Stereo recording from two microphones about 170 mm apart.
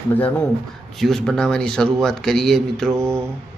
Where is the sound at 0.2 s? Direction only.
10° left (ahead or behind).